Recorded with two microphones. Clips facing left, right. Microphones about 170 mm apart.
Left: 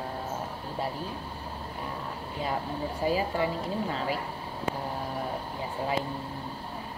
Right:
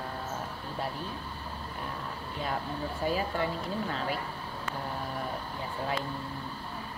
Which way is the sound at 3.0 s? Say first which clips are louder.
Left 3 dB; 10° left (ahead or behind).